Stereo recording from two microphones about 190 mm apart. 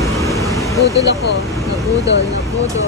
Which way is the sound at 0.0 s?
15° left (ahead or behind).